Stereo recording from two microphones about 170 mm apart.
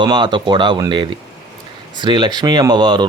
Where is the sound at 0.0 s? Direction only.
25° right (ahead or behind).